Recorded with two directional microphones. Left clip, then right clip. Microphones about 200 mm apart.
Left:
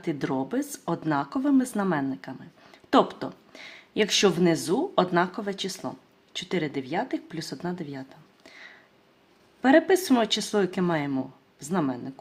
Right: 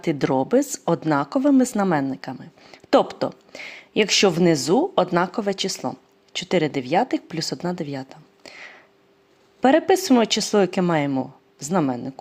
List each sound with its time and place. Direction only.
0.0 s speech: 35° right (ahead or behind)